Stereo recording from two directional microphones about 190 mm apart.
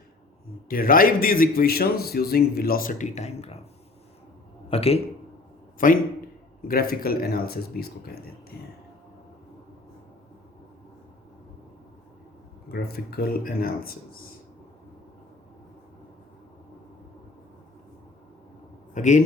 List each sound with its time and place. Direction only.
0.7 s a man's voice: 50° left (ahead or behind)
4.7 s a man's voice: 30° left (ahead or behind)
5.8 s a man's voice: 45° left (ahead or behind)
12.6 s a man's voice: 55° left (ahead or behind)
18.9 s a man's voice: 40° left (ahead or behind)